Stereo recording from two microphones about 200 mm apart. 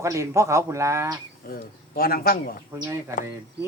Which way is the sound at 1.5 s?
50° left (ahead or behind).